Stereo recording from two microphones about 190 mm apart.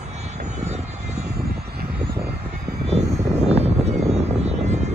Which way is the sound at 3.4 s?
35° right (ahead or behind).